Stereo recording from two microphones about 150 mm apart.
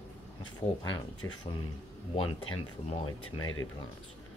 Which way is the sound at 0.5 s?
30° left (ahead or behind).